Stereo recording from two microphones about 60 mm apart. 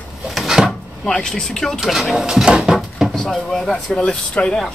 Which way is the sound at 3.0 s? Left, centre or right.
Centre.